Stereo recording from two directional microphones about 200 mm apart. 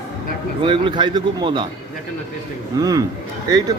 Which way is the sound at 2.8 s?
15° right (ahead or behind).